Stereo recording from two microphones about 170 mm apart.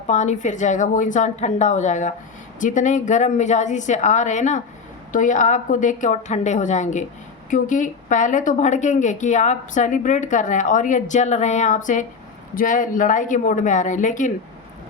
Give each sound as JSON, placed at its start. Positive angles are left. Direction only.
{"t": 0.1, "sound": "a woman's voice", "side_deg": 45}